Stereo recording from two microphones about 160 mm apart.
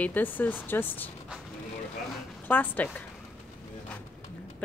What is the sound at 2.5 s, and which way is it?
Speech, 10° left (ahead or behind).